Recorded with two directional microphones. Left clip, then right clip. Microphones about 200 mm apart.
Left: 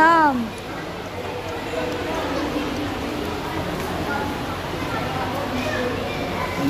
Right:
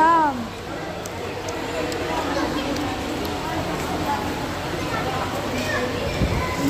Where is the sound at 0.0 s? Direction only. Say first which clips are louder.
Left 2 dB; 15° left (ahead or behind).